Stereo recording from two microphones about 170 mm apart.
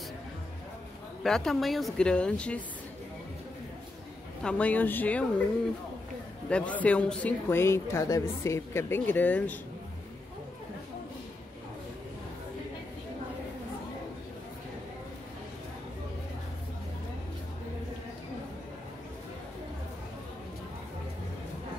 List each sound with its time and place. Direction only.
1.2 s a woman's voice: centre (ahead or behind)
4.4 s a man's voice: 5° left (ahead or behind)
6.5 s a man's voice: 10° left (ahead or behind)